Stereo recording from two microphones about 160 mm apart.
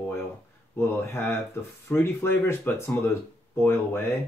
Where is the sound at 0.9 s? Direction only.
15° left (ahead or behind).